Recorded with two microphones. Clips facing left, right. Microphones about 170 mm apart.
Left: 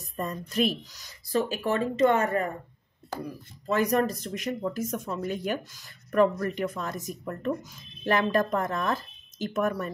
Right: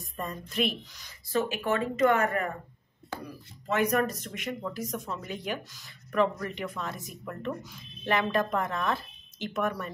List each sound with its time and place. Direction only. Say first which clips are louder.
0.0 s speech: left 4 dB; 40° left (ahead or behind)
3.6 s speech: left 2 dB; 35° left (ahead or behind)